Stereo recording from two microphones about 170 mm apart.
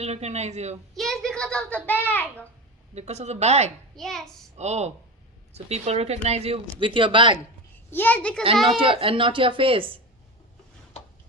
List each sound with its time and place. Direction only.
0.0 s speech: 40° right (ahead or behind)
0.9 s a child's voice: centre (ahead or behind)
2.9 s speech: 40° right (ahead or behind)
3.9 s a child's voice: centre (ahead or behind)
4.5 s speech: 40° right (ahead or behind)
7.9 s a child's voice: 10° left (ahead or behind)
8.7 s speech: 30° right (ahead or behind)